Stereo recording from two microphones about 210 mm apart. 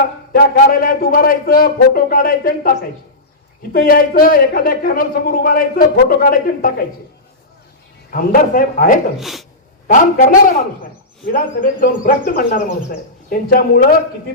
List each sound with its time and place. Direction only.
0.5 s a man's voice: 45° left (ahead or behind)
3.7 s a man's voice: 45° left (ahead or behind)
8.1 s speech: 40° left (ahead or behind)
9.1 s speech: centre (ahead or behind)
9.8 s a man's voice: 40° left (ahead or behind)